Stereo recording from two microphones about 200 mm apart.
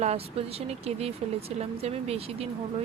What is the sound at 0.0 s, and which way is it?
Speech, 30° right (ahead or behind).